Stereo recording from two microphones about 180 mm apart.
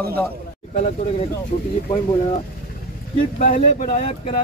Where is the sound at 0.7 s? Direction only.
40° left (ahead or behind).